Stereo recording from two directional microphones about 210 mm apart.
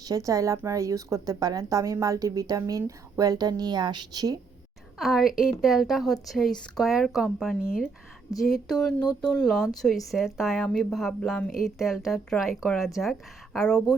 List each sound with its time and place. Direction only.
0.0 s a woman's voice: 15° right (ahead or behind)
4.9 s a woman's voice: centre (ahead or behind)